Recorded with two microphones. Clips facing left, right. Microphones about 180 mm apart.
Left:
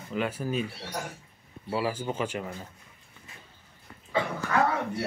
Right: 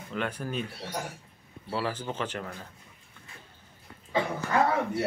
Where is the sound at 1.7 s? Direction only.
10° left (ahead or behind).